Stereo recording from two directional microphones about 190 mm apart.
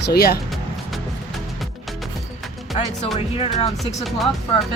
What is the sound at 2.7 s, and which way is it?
Speech, 35° left (ahead or behind).